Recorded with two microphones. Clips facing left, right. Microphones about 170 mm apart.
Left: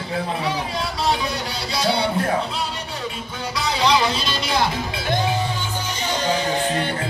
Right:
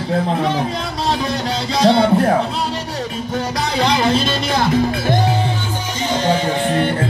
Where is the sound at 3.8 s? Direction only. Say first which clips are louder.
Right 4 dB; 50° right (ahead or behind).